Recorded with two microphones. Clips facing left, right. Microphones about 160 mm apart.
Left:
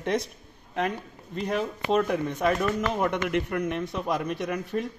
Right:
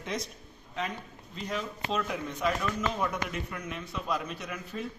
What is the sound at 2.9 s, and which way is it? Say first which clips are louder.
Speech: left 7 dB; 65° left (ahead or behind).